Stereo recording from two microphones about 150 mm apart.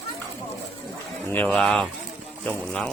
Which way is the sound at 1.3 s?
10° left (ahead or behind).